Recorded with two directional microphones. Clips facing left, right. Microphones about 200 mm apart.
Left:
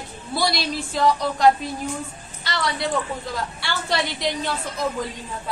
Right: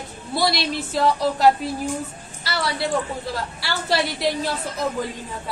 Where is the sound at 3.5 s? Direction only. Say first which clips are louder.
Right 3 dB; 5° right (ahead or behind).